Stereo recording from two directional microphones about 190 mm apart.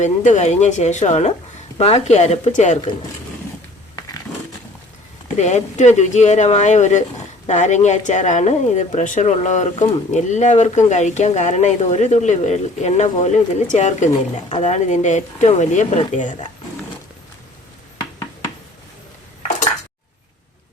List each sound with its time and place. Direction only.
0.0 s a woman's voice: 40° left (ahead or behind)
3.9 s crushing: 20° left (ahead or behind)
5.4 s a woman's voice: 40° left (ahead or behind)